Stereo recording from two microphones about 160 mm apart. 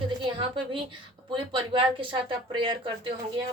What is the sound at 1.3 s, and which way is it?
Speech, 30° right (ahead or behind).